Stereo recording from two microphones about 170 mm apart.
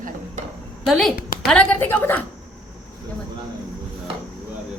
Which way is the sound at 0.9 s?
Centre (ahead or behind).